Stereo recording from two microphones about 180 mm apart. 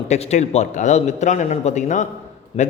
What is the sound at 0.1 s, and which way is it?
A man's voice, 40° left (ahead or behind).